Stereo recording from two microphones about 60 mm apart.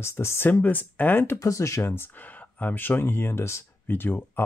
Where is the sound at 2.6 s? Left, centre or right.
Left.